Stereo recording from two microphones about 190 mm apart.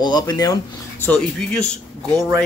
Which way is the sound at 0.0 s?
20° left (ahead or behind).